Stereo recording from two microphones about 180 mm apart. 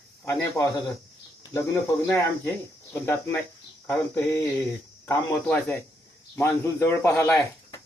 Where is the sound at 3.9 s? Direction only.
15° left (ahead or behind).